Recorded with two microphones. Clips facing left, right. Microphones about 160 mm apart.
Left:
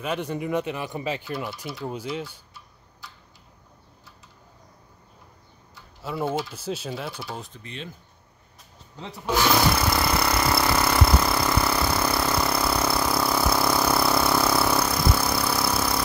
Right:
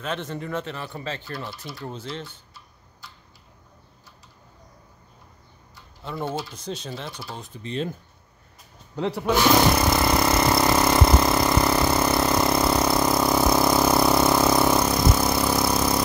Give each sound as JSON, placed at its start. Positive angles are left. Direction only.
{"t": 0.0, "sound": "speech", "side_deg": 10}
{"t": 5.8, "sound": "speech", "side_deg": 5}
{"t": 7.6, "sound": "speech", "side_deg": -35}
{"t": 8.9, "sound": "speech", "side_deg": -70}
{"t": 9.8, "sound": "vehicle", "side_deg": -20}